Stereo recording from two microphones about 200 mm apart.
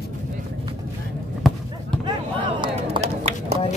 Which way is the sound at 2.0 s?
25° right (ahead or behind).